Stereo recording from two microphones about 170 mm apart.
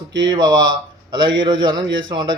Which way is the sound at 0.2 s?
25° right (ahead or behind).